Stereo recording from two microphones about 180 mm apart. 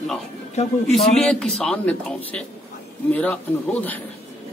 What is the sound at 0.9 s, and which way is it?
A man's voice, centre (ahead or behind).